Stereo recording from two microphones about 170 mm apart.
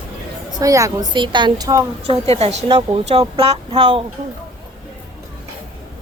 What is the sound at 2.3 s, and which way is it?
A woman's voice, 35° right (ahead or behind).